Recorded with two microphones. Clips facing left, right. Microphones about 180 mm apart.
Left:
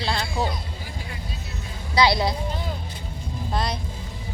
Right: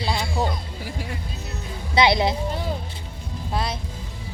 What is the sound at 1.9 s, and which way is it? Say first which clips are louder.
Music: right 1 dB; 20° right (ahead or behind).